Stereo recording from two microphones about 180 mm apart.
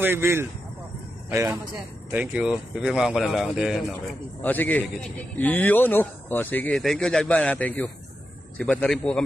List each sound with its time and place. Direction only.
0.0 s speech: 15° right (ahead or behind)
4.4 s speech: 10° left (ahead or behind)